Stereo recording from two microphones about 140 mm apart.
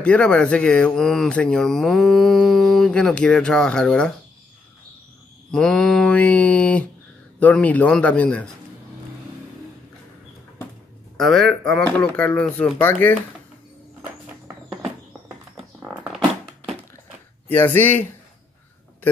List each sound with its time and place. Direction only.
0.0 s speech: 5° left (ahead or behind)
5.5 s speech: 5° left (ahead or behind)
11.1 s speech: centre (ahead or behind)
17.5 s speech: 15° left (ahead or behind)